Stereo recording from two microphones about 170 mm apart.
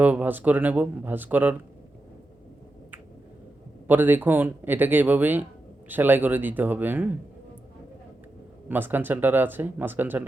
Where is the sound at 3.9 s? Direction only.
10° right (ahead or behind).